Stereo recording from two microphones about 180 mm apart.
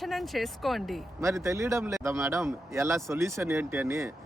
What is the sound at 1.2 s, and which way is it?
Speech, 15° right (ahead or behind).